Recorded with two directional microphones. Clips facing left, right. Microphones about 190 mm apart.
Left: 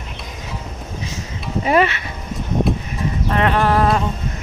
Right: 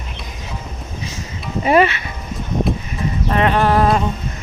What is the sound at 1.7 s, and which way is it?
Speech, 15° right (ahead or behind).